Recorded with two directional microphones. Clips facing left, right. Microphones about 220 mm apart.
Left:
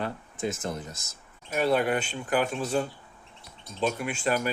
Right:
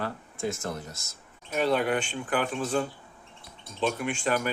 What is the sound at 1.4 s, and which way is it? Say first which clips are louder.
Speech: left 1 dB; 5° left (ahead or behind).